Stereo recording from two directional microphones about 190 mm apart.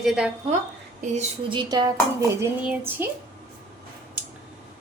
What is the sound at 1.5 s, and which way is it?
Speech, 25° right (ahead or behind).